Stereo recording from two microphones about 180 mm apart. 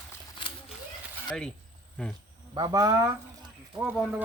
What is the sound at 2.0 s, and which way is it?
Speech, 5° left (ahead or behind).